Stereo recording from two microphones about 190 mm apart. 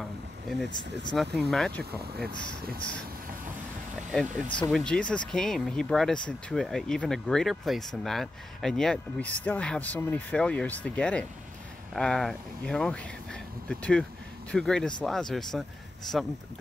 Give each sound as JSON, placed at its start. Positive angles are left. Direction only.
{"t": 0.0, "sound": "vehicle", "side_deg": 0}
{"t": 1.1, "sound": "speech", "side_deg": 0}
{"t": 2.2, "sound": "speech", "side_deg": -55}
{"t": 4.1, "sound": "speech", "side_deg": 5}